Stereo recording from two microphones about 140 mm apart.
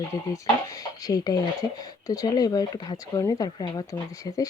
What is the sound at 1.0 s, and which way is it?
Speech, 25° left (ahead or behind).